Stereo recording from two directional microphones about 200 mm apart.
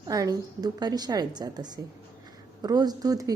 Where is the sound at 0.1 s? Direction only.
20° right (ahead or behind).